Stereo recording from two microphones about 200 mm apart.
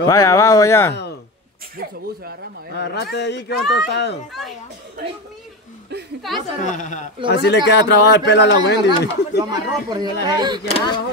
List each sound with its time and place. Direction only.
0.0 s speech: 15° left (ahead or behind)
2.8 s a man's voice: 60° left (ahead or behind)
4.3 s speech: centre (ahead or behind)
6.2 s speech: centre (ahead or behind)
6.6 s a woman's voice: 40° left (ahead or behind)
7.4 s a man's voice: 60° left (ahead or behind)
9.4 s speech: 20° right (ahead or behind)
10.7 s speech: 25° left (ahead or behind)